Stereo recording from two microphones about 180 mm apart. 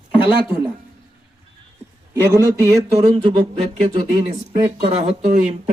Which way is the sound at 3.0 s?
30° right (ahead or behind).